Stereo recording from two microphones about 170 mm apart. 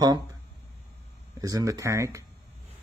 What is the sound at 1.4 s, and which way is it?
Speech, 20° right (ahead or behind).